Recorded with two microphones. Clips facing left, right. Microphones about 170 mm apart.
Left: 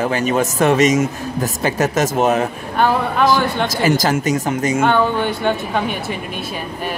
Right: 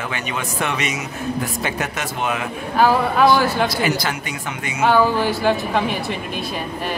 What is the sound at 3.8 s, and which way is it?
Speech, 40° left (ahead or behind).